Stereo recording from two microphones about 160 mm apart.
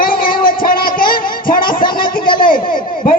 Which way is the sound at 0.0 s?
60° left (ahead or behind).